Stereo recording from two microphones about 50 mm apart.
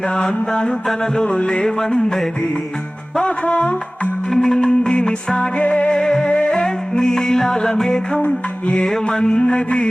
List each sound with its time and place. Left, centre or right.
0.1 s music: centre
3.2 s music: left
4.3 s music: centre